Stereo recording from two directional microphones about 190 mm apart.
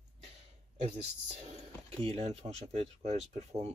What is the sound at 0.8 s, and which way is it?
Speech, 35° right (ahead or behind).